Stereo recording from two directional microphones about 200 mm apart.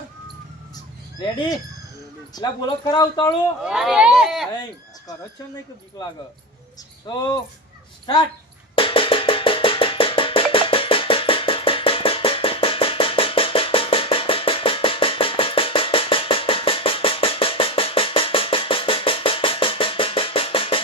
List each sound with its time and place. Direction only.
2.3 s speech: 20° left (ahead or behind)
3.6 s speech: 5° right (ahead or behind)
8.7 s music: 25° left (ahead or behind)